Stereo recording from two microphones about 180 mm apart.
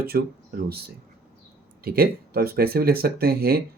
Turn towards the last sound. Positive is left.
turn(degrees=-55)  # may be behind; listen again after turning